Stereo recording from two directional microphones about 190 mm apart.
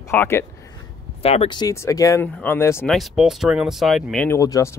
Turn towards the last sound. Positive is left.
turn(degrees=15)  # may be behind; listen again after turning